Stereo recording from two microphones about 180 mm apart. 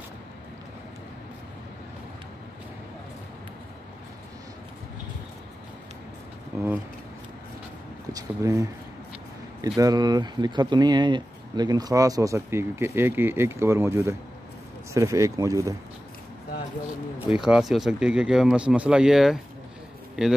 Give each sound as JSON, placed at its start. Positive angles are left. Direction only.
{"t": 6.5, "sound": "speech", "side_deg": -15}
{"t": 8.1, "sound": "speech", "side_deg": -20}
{"t": 17.4, "sound": "speech", "side_deg": -5}